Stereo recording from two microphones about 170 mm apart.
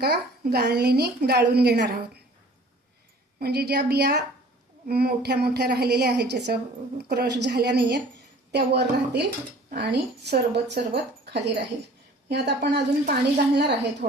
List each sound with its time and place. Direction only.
0.0 s a woman's voice: 70° right (ahead or behind)
3.3 s a woman's voice: 65° right (ahead or behind)